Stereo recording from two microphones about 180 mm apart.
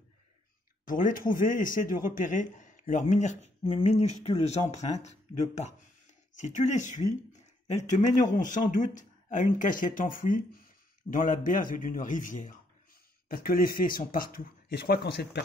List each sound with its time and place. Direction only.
0.8 s speech: 50° left (ahead or behind); by 15.4 s 70° left (ahead or behind)